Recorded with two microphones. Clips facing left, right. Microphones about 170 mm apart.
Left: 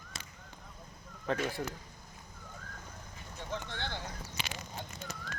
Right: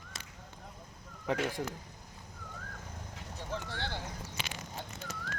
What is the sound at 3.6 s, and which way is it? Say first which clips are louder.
Clip-clop: right 1 dB; 35° right (ahead or behind).